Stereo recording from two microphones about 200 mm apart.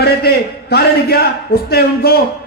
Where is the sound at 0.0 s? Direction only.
50° left (ahead or behind).